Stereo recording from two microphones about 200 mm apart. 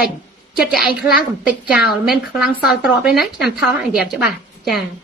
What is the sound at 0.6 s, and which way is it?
A woman's voice, centre (ahead or behind).